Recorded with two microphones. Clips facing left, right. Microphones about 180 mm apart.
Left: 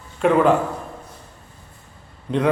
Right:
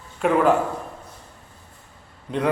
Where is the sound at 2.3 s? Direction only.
5° right (ahead or behind).